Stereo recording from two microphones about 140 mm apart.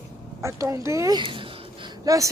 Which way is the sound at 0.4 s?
20° right (ahead or behind).